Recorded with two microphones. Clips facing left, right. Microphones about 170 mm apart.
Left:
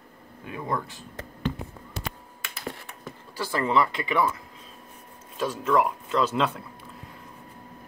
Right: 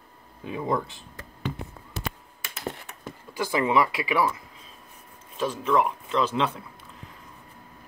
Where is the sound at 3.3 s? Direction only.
15° right (ahead or behind).